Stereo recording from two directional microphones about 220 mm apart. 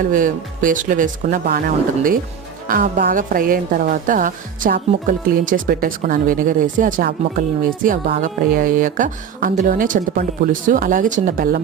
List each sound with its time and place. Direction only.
0.0 s a woman's voice: 35° right (ahead or behind)